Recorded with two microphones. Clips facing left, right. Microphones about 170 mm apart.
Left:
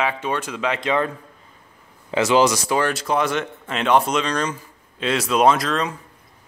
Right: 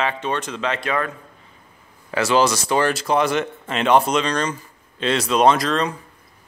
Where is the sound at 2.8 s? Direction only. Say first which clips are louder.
Right 4 dB; centre (ahead or behind).